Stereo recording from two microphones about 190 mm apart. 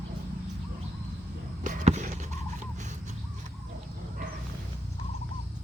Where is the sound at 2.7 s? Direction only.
40° right (ahead or behind).